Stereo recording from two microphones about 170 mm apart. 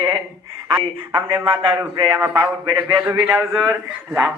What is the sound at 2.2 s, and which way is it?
Speech, 10° right (ahead or behind).